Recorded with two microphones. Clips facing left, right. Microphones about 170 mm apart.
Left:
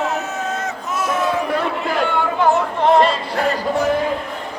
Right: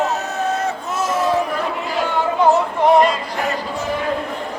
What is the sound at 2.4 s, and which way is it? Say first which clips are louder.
Yodeling: right 2 dB; 15° right (ahead or behind).